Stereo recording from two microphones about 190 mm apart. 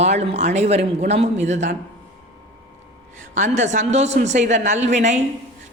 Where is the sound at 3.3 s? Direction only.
40° right (ahead or behind).